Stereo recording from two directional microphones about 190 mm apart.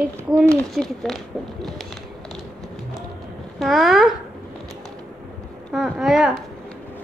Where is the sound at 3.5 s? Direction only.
Centre (ahead or behind).